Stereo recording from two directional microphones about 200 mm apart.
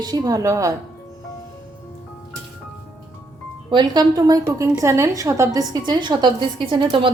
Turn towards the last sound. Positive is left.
turn(degrees=-25)  # may be behind; listen again after turning